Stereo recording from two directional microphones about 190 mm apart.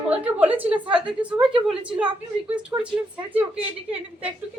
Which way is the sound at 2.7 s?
15° right (ahead or behind).